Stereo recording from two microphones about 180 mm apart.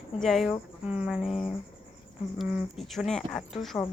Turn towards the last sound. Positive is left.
turn(degrees=0)  # may be behind; listen again after turning